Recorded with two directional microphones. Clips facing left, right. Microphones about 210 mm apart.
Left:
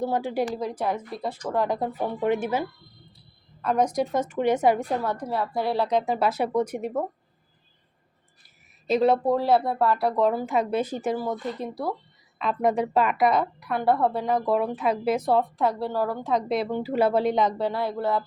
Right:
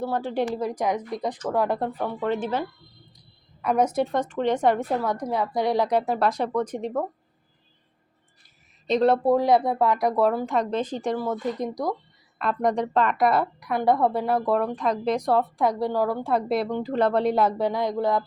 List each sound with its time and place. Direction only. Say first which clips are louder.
0.0 s speech: even; 15° left (ahead or behind)
0.6 s a woman's voice: right 2 dB; 10° right (ahead or behind)
1.5 s speech: even; 5° right (ahead or behind)
1.9 s speech: left 2 dB; 10° left (ahead or behind)
3.6 s speech: right 1 dB; 10° right (ahead or behind); by 4.9 s 5° left (ahead or behind)
4.9 s a woman's voice: right 2 dB; 15° right (ahead or behind)
6.1 s speech: even; 5° left (ahead or behind)
8.9 s speech: right 1 dB; centre (ahead or behind)
11.6 s a woman's voice: right 3 dB; 15° right (ahead or behind)
12.4 s speech: even; centre (ahead or behind)
13.6 s a woman's voice: right 1 dB; 15° right (ahead or behind)